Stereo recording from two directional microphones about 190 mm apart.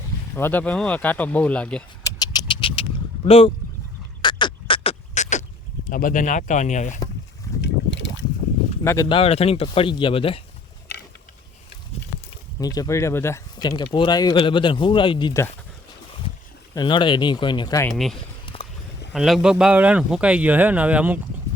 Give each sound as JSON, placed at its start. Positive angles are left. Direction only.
{"t": 0.3, "sound": "speech", "side_deg": 10}
{"t": 2.0, "sound": "a sound", "side_deg": 20}
{"t": 3.2, "sound": "speech", "side_deg": 30}
{"t": 4.2, "sound": "a sound", "side_deg": 25}
{"t": 5.9, "sound": "speech", "side_deg": 45}
{"t": 7.6, "sound": "boat", "side_deg": 70}
{"t": 8.8, "sound": "speech", "side_deg": 15}
{"t": 9.0, "sound": "speech", "side_deg": 30}
{"t": 12.5, "sound": "speech", "side_deg": 20}
{"t": 16.7, "sound": "speech", "side_deg": 25}
{"t": 17.9, "sound": "speech", "side_deg": 0}
{"t": 18.4, "sound": "vehicle", "side_deg": 30}
{"t": 19.1, "sound": "a man's voice", "side_deg": 0}